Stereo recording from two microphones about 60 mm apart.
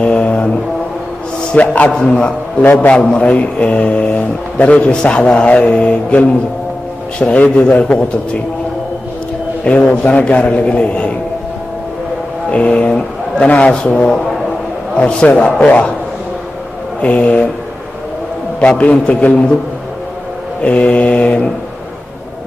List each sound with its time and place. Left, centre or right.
0.0 s mantra: left
1.5 s a man's voice: centre
9.7 s a man's voice: left
12.4 s a man's voice: centre
17.0 s a man's voice: left
18.6 s a man's voice: centre
20.6 s a man's voice: left